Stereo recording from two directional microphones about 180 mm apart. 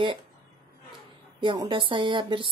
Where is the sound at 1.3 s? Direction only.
25° right (ahead or behind).